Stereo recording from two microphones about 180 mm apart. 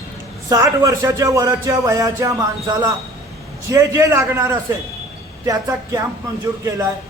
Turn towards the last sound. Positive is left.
turn(degrees=-15)  # may be behind; listen again after turning